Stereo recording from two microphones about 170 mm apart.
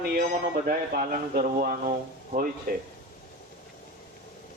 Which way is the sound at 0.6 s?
60° right (ahead or behind).